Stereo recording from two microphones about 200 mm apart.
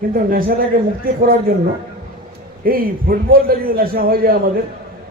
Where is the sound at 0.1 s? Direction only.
45° right (ahead or behind).